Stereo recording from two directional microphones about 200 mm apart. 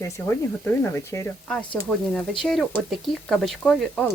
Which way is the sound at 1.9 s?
5° left (ahead or behind).